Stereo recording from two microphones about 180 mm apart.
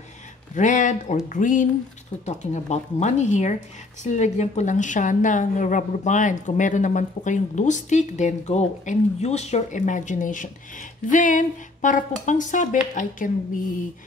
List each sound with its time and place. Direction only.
0.6 s a woman's voice: 45° left (ahead or behind)